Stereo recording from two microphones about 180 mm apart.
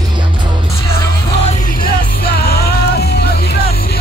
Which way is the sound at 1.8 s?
60° left (ahead or behind).